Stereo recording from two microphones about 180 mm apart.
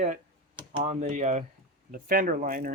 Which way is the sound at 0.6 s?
25° right (ahead or behind).